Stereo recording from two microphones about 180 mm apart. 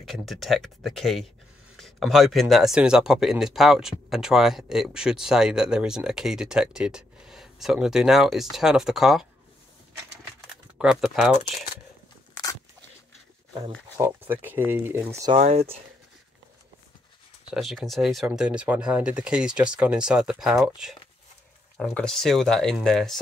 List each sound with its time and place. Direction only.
0.0 s speech: centre (ahead or behind)
10.5 s speech: 5° right (ahead or behind)
13.9 s speech: 10° right (ahead or behind)
15.3 s speech: 35° right (ahead or behind)
17.5 s speech: centre (ahead or behind)